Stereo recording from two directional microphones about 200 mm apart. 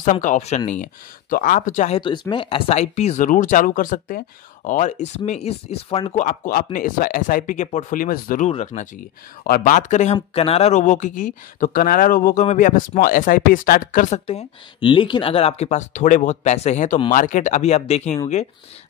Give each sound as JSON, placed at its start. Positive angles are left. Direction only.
{"t": 0.0, "sound": "speech", "side_deg": 40}
{"t": 2.0, "sound": "speech", "side_deg": 25}
{"t": 14.2, "sound": "speech", "side_deg": 30}